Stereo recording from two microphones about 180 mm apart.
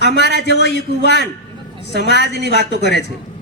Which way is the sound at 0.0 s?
70° left (ahead or behind).